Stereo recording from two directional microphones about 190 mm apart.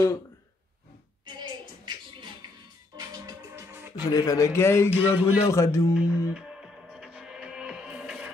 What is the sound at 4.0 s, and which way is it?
A man's voice, 20° left (ahead or behind).